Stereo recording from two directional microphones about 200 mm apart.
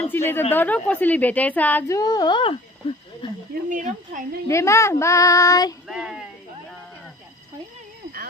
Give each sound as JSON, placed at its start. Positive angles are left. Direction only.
{"t": 0.0, "sound": "a woman's voice", "side_deg": 10}
{"t": 3.6, "sound": "speech", "side_deg": -40}
{"t": 4.5, "sound": "a woman's voice", "side_deg": 15}
{"t": 5.9, "sound": "speech", "side_deg": 0}